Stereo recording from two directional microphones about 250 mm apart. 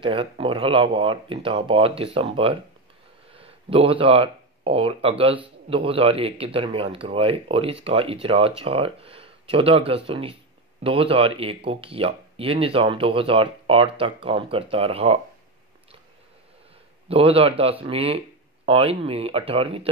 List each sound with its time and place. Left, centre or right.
0.0 s speech: right
17.1 s speech: right